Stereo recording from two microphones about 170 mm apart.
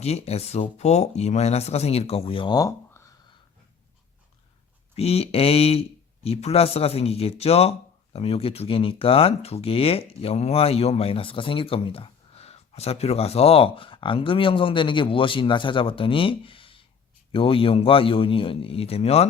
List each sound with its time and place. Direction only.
0.0 s speech: 40° left (ahead or behind); by 3.0 s 20° left (ahead or behind)
4.9 s speech: 35° left (ahead or behind)